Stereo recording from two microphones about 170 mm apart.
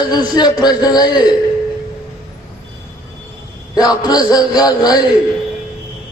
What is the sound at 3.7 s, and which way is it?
A man's voice, 20° left (ahead or behind).